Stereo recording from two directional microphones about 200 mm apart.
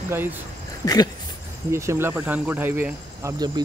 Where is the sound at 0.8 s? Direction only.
20° left (ahead or behind).